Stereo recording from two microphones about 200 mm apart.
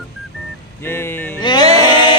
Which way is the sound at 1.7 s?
20° left (ahead or behind).